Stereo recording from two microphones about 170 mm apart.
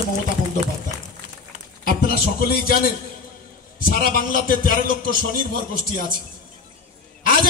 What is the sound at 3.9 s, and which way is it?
Speech, 55° left (ahead or behind).